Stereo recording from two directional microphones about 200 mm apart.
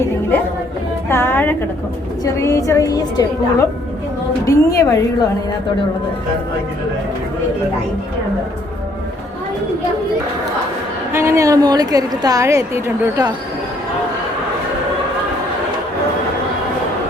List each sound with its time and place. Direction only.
1.0 s a sound: 10° left (ahead or behind)
2.2 s a woman's voice: 15° left (ahead or behind)
11.1 s a woman's voice: 15° right (ahead or behind)